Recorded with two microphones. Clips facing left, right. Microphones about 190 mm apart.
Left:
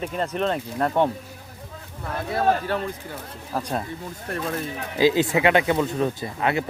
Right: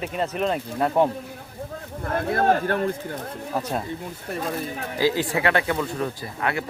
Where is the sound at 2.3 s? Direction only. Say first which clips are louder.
Right 1 dB; 55° right (ahead or behind).